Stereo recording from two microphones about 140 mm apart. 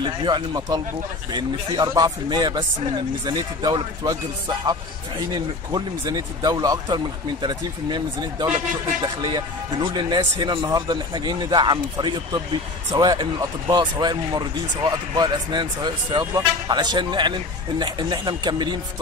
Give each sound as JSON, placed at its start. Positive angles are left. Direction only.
{"t": 0.0, "sound": "speech", "side_deg": -35}
{"t": 5.3, "sound": "speech", "side_deg": -30}